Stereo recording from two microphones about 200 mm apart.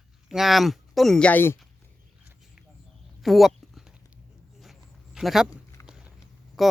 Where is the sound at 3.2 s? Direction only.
Centre (ahead or behind).